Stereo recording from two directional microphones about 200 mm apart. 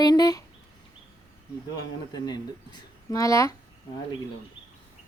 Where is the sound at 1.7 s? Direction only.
20° left (ahead or behind).